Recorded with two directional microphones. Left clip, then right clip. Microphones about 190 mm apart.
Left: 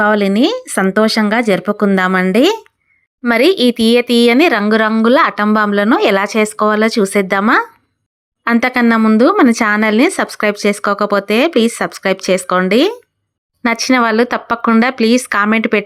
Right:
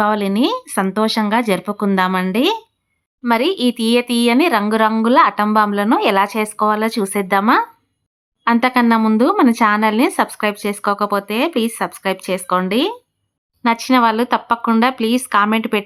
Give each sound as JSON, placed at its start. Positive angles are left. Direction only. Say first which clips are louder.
{"t": 0.0, "sound": "speech", "louder": "left 4 dB", "side_deg": 15}